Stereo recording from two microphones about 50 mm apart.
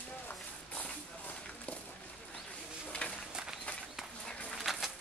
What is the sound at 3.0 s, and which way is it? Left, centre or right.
Run, left.